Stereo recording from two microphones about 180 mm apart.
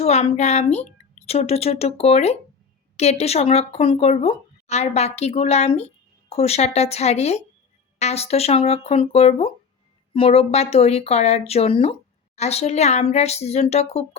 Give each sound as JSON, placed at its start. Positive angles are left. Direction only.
{"t": 0.0, "sound": "a woman's voice", "side_deg": 35}